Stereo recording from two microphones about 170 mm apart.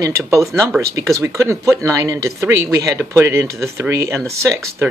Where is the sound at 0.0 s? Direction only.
15° right (ahead or behind).